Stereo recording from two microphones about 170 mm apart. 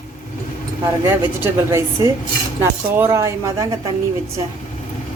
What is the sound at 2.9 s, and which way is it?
Speech, 15° right (ahead or behind).